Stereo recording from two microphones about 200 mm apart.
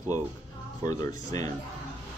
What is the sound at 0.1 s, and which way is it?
Speech, 20° left (ahead or behind).